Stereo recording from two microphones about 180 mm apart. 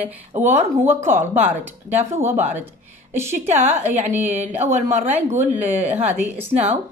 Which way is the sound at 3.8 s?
40° right (ahead or behind).